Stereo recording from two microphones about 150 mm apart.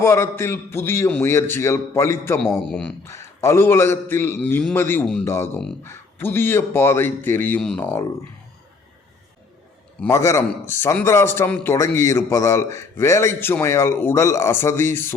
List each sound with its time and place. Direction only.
0.0 s a man's voice: 15° left (ahead or behind)
3.0 s a man's voice: 20° left (ahead or behind)
10.1 s a man's voice: 20° left (ahead or behind)